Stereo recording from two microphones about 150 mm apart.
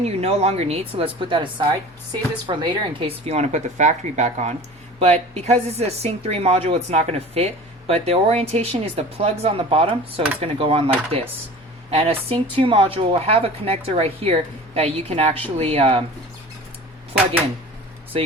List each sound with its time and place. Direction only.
0.0 s speech: 45° right (ahead or behind)
3.2 s speech: 50° right (ahead or behind)